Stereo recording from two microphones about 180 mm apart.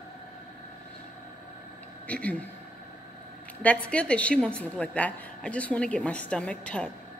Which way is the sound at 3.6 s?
5° left (ahead or behind).